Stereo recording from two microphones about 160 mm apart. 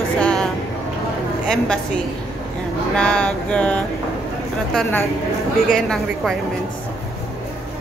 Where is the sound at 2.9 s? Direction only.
5° left (ahead or behind).